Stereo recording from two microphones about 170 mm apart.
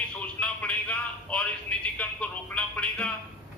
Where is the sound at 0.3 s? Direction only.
5° left (ahead or behind).